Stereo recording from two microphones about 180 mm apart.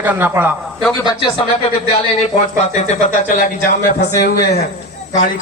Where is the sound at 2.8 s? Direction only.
45° left (ahead or behind).